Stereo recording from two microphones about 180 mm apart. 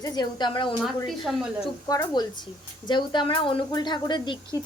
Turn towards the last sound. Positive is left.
turn(degrees=25)  # may be behind; listen again after turning